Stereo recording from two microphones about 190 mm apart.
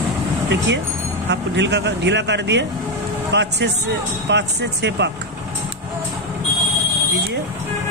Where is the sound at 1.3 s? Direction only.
65° right (ahead or behind).